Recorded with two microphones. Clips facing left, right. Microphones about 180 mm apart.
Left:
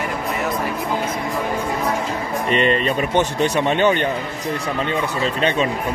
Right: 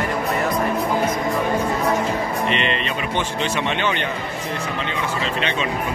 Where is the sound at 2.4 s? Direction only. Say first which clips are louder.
Left 4 dB; 45° left (ahead or behind).